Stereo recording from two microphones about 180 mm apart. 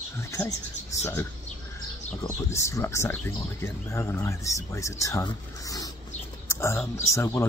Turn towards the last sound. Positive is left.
turn(degrees=15)  # may be behind; listen again after turning